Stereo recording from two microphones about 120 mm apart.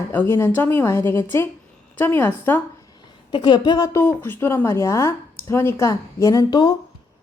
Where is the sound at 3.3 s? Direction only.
40° left (ahead or behind).